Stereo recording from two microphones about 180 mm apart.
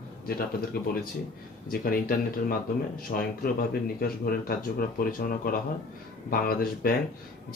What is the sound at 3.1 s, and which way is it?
Speech, 50° left (ahead or behind).